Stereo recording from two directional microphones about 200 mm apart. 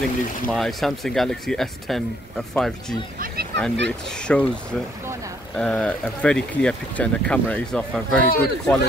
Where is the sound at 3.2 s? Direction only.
50° right (ahead or behind).